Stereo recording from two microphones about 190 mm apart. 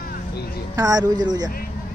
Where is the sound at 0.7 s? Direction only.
20° right (ahead or behind).